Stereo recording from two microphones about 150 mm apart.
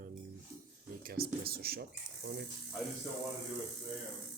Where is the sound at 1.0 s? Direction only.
90° right.